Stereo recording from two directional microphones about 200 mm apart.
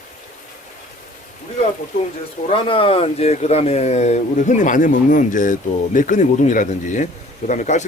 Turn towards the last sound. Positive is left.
turn(degrees=35)  # may be behind; listen again after turning